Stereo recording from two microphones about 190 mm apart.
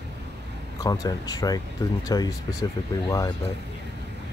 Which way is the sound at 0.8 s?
20° left (ahead or behind).